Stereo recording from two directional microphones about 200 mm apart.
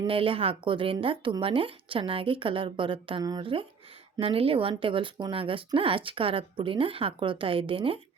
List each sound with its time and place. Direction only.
0.0 s speech: 25° right (ahead or behind)